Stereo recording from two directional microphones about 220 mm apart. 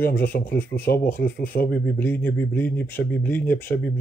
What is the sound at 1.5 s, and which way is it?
Speech, 40° left (ahead or behind).